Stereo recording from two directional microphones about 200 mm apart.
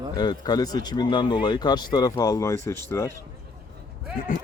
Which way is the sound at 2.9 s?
15° left (ahead or behind).